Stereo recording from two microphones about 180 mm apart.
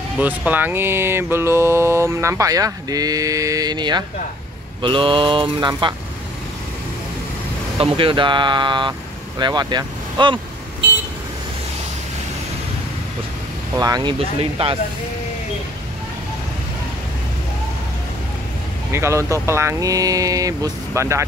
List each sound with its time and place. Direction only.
0.2 s speech: 10° right (ahead or behind); by 4.0 s 25° right (ahead or behind)
4.8 s mantra: 30° right (ahead or behind)
7.8 s mantra: 30° right (ahead or behind)
9.4 s speech: 25° right (ahead or behind)
13.7 s mantra: 20° right (ahead or behind)
18.9 s speech: 15° right (ahead or behind)